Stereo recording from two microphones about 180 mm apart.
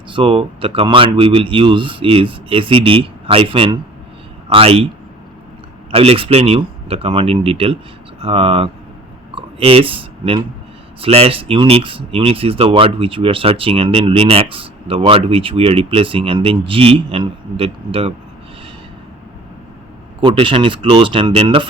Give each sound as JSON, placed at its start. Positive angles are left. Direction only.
{"t": 0.1, "sound": "speech", "side_deg": -30}
{"t": 5.9, "sound": "speech", "side_deg": -30}
{"t": 9.3, "sound": "a sound", "side_deg": -30}
{"t": 11.0, "sound": "speech", "side_deg": -30}
{"t": 20.2, "sound": "speech", "side_deg": -25}